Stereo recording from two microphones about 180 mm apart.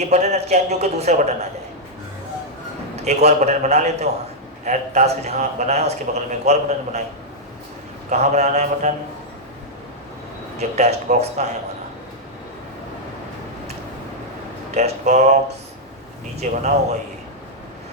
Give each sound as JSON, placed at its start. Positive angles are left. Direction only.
{"t": 0.0, "sound": "a man's voice", "side_deg": -40}
{"t": 2.9, "sound": "a man's voice", "side_deg": -35}
{"t": 8.1, "sound": "a man's voice", "side_deg": -40}
{"t": 10.6, "sound": "a man's voice", "side_deg": -35}
{"t": 14.8, "sound": "a man's voice", "side_deg": -40}